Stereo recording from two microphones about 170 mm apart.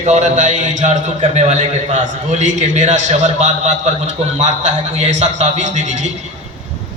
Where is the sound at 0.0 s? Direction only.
45° right (ahead or behind).